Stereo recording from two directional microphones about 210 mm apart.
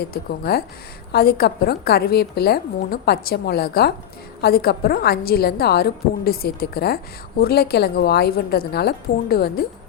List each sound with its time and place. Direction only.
0.0 s a woman's voice: 50° left (ahead or behind)